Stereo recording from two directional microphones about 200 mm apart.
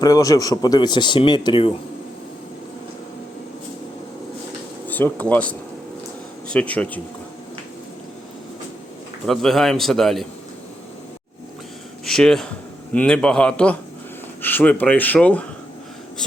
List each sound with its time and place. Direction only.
0.0 s speech: 15° left (ahead or behind)
4.9 s speech: 10° left (ahead or behind)
9.2 s a man's voice: centre (ahead or behind)
12.0 s a man's voice: 5° left (ahead or behind)